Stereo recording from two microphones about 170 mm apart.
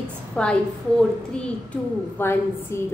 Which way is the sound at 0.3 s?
5° left (ahead or behind).